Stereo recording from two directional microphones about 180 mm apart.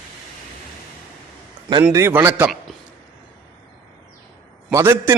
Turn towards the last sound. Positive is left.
turn(degrees=-15)  # may be behind; listen again after turning